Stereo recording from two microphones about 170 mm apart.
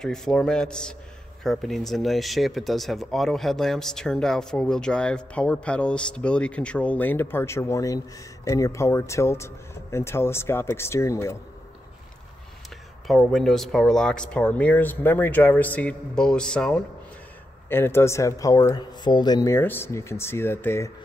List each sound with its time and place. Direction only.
0.0 s speech: 5° left (ahead or behind)
13.0 s speech: centre (ahead or behind)